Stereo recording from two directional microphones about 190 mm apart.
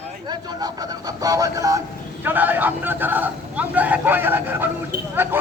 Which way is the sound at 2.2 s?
10° right (ahead or behind).